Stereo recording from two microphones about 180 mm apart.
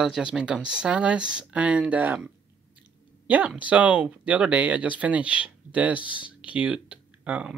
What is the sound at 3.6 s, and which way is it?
Speech, 10° right (ahead or behind).